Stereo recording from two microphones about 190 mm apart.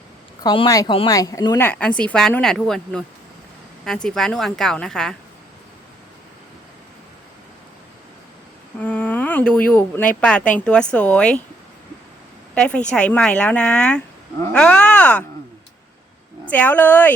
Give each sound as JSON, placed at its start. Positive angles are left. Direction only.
{"t": 0.4, "sound": "speech", "side_deg": 25}
{"t": 1.6, "sound": "speech", "side_deg": 5}
{"t": 8.8, "sound": "a sound", "side_deg": 5}
{"t": 9.6, "sound": "speech", "side_deg": 10}
{"t": 12.5, "sound": "a woman's voice", "side_deg": 5}
{"t": 16.5, "sound": "speech", "side_deg": 10}